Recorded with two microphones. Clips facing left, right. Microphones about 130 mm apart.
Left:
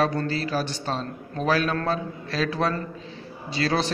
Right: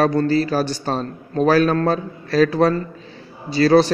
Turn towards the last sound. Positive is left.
turn(degrees=-35)  # may be behind; listen again after turning